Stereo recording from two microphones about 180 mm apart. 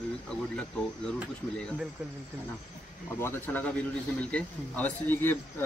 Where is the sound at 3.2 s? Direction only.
10° left (ahead or behind).